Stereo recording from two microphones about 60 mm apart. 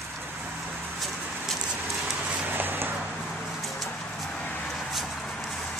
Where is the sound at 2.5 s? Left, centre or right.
Right.